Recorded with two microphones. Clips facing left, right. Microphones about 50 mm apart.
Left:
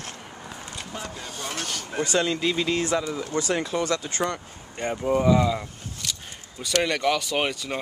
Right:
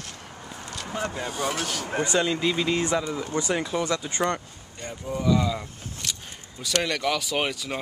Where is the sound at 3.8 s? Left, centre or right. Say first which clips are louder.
Left 1 dB; centre.